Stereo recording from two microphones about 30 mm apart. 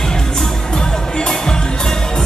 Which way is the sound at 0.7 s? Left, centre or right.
Left.